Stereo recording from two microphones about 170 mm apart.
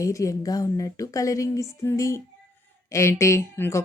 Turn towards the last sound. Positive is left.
turn(degrees=15)  # may be behind; listen again after turning